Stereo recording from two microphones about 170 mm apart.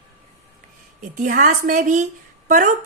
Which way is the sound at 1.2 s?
50° right (ahead or behind).